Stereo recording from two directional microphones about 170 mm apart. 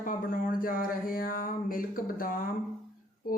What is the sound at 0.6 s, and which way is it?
Speech, 55° left (ahead or behind).